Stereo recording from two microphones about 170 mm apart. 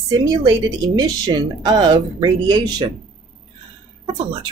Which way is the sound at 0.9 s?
25° right (ahead or behind).